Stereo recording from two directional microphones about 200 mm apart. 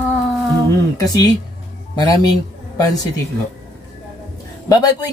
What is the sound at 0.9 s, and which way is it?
A man's voice, 20° left (ahead or behind).